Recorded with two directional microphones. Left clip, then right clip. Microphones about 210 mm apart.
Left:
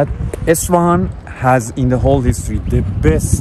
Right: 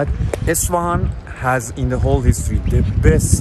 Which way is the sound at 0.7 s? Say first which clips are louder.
Left 5 dB; 50° left (ahead or behind).